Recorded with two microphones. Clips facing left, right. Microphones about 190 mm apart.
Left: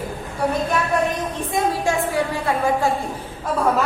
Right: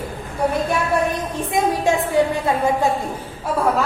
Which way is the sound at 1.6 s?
15° right (ahead or behind).